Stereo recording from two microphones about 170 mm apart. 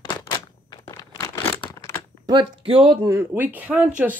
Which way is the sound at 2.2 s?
30° right (ahead or behind).